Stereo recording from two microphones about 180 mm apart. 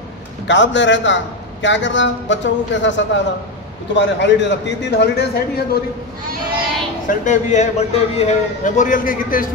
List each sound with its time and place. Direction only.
0.5 s a man's voice: 90° left
3.9 s a man's voice: 80° left; by 5.8 s 60° left (ahead or behind)
7.1 s a man's voice: 45° left (ahead or behind)